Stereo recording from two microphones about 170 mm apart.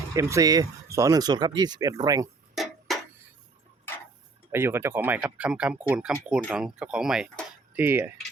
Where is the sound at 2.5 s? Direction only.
Centre (ahead or behind).